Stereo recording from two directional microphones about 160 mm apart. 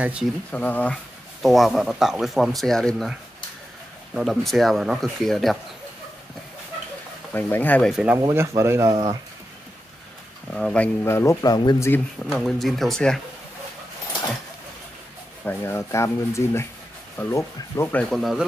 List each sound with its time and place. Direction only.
0.0 s speech: 5° right (ahead or behind)
0.5 s speech: 10° left (ahead or behind)
7.3 s speech: 10° left (ahead or behind)
7.9 s speech: 5° right (ahead or behind)
8.2 s speech: 20° right (ahead or behind)
10.5 s speech: 5° left (ahead or behind); by 11.9 s 25° left (ahead or behind)
11.9 s speech: 5° left (ahead or behind)
15.4 s speech: 15° left (ahead or behind)
18.1 s speech: centre (ahead or behind)